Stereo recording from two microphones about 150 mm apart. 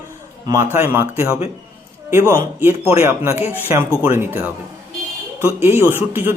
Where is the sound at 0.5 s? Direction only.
15° right (ahead or behind).